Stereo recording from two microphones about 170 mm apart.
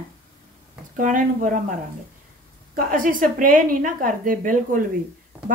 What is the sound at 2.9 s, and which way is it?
A woman's voice, 55° right (ahead or behind).